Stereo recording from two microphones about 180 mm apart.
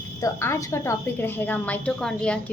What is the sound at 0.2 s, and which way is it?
A woman's voice, 15° left (ahead or behind).